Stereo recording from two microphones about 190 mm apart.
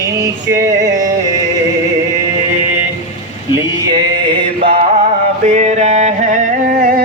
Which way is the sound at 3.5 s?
20° right (ahead or behind).